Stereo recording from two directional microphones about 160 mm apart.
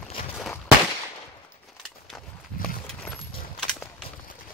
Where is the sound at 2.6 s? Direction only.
5° left (ahead or behind).